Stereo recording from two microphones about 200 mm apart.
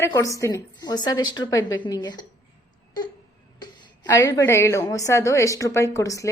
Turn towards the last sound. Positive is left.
turn(degrees=15)  # may be behind; listen again after turning